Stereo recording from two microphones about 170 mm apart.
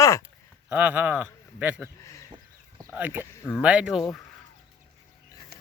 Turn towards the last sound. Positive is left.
turn(degrees=-70)  # may be behind; listen again after turning